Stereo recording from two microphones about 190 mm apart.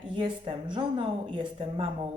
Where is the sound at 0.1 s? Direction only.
25° right (ahead or behind).